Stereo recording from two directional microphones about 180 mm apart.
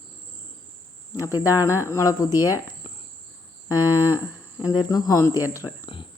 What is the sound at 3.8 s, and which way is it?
Cricket, 10° right (ahead or behind).